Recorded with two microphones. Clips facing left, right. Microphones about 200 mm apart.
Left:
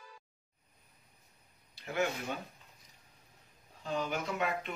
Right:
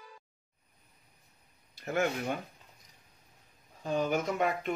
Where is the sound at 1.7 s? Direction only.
45° right (ahead or behind).